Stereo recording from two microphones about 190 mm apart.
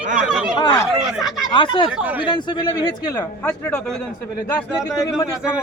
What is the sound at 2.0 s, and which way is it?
Speech, 10° right (ahead or behind).